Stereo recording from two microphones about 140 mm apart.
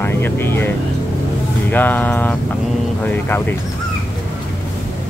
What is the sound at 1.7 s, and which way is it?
Speech, 15° left (ahead or behind).